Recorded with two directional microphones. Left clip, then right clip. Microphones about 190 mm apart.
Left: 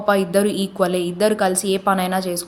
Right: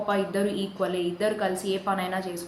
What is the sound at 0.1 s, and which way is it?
A woman's voice, 65° left (ahead or behind).